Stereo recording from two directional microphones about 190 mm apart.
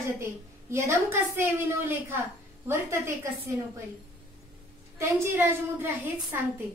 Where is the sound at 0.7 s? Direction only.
15° right (ahead or behind).